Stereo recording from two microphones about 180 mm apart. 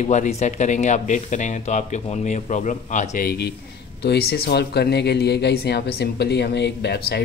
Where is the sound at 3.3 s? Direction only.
65° left (ahead or behind).